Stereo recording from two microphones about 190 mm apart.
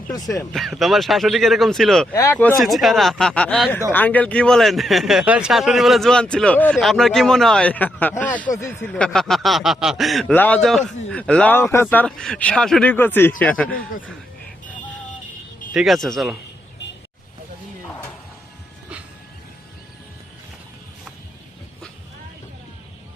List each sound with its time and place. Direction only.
0.1 s speech: 20° left (ahead or behind)
0.5 s speech: centre (ahead or behind)
2.1 s speech: 15° left (ahead or behind)
8.9 s speech: 5° left (ahead or behind)
15.7 s speech: centre (ahead or behind)